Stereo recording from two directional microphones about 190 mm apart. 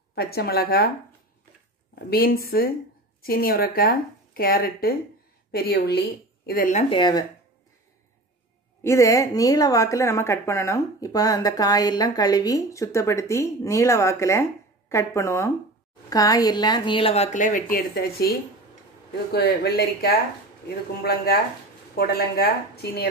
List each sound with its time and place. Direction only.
0.1 s a woman's voice: 55° left (ahead or behind)
2.0 s speech: 50° left (ahead or behind)
7.0 s a woman's voice: 25° left (ahead or behind)
8.8 s a woman's voice: 15° left (ahead or behind); by 17.7 s 45° left (ahead or behind)
19.1 s a woman's voice: 55° left (ahead or behind)